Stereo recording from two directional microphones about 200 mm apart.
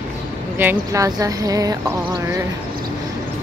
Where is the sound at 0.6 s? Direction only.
15° right (ahead or behind).